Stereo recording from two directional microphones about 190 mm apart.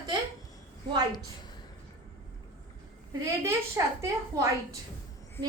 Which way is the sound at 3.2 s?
15° right (ahead or behind).